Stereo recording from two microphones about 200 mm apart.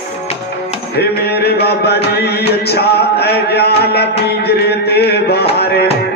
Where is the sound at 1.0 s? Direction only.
55° left (ahead or behind).